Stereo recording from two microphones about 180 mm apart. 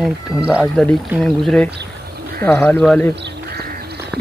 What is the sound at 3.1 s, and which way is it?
Sheep, 65° right (ahead or behind).